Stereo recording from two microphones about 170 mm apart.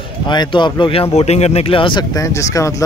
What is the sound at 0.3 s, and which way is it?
Speech, 25° left (ahead or behind).